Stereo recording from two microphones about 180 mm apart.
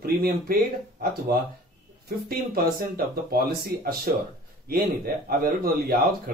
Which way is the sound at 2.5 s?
55° right (ahead or behind).